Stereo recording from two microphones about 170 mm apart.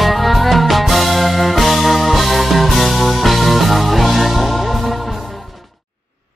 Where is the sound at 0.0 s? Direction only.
Centre (ahead or behind).